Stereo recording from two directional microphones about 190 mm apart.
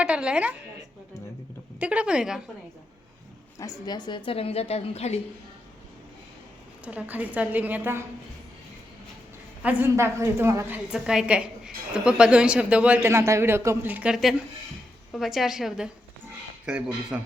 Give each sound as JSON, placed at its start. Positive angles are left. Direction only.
{"t": 0.0, "sound": "a woman's voice", "side_deg": -5}
{"t": 1.8, "sound": "a woman's voice", "side_deg": -5}
{"t": 3.6, "sound": "a woman's voice", "side_deg": 20}
{"t": 6.8, "sound": "a woman's voice", "side_deg": -10}
{"t": 9.6, "sound": "a woman's voice", "side_deg": -10}
{"t": 10.9, "sound": "a woman's voice", "side_deg": -5}